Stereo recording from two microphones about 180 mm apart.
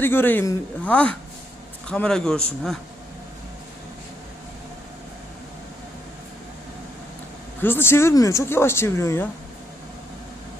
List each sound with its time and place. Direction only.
0.0 s a man's voice: 10° left (ahead or behind)
7.6 s speech: 10° left (ahead or behind)